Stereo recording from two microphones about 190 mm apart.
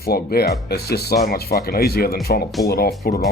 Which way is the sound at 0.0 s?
55° left (ahead or behind).